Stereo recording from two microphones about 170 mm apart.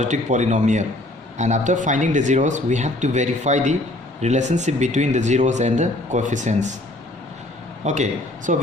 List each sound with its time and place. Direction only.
0.0 s speech: 45° right (ahead or behind)
7.9 s speech: 45° right (ahead or behind)